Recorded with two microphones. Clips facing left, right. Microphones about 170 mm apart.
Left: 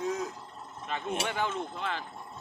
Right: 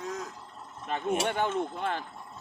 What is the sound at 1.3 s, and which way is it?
Speech, 50° right (ahead or behind).